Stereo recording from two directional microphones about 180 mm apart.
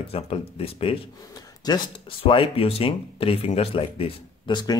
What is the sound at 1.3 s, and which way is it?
Speech, 20° left (ahead or behind).